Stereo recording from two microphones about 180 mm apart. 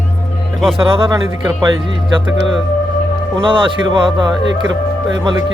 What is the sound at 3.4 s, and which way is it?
Speech, 30° right (ahead or behind).